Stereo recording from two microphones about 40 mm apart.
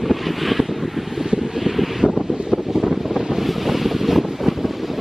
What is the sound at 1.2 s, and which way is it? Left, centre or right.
Vehicle, centre.